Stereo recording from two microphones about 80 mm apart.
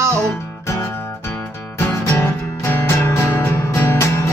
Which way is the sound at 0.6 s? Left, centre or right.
Left.